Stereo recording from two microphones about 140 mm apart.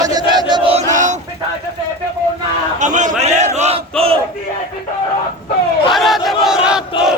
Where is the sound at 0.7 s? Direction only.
55° right (ahead or behind).